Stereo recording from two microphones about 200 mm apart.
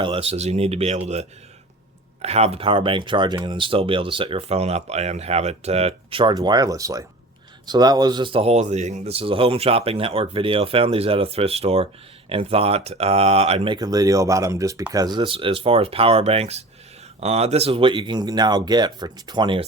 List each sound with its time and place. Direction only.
0.0 s speech: 25° right (ahead or behind)
13.7 s speech: 20° right (ahead or behind)